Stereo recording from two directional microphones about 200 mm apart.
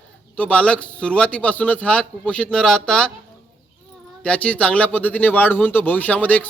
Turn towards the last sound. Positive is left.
turn(degrees=10)  # may be behind; listen again after turning